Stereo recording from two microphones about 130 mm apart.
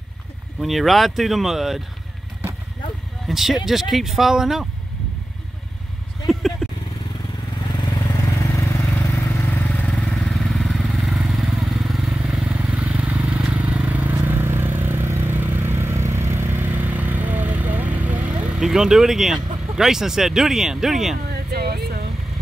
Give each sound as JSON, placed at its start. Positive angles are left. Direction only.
{"t": 0.6, "sound": "speech", "side_deg": 0}
{"t": 3.3, "sound": "speech", "side_deg": 0}
{"t": 6.2, "sound": "vehicle", "side_deg": 0}
{"t": 7.7, "sound": "vehicle", "side_deg": 30}